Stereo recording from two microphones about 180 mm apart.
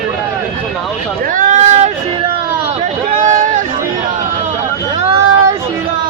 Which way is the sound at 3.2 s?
45° right (ahead or behind).